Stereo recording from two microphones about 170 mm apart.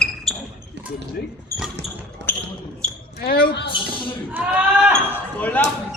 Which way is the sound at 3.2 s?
65° left (ahead or behind).